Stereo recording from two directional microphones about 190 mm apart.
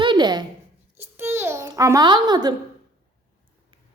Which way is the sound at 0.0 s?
25° right (ahead or behind).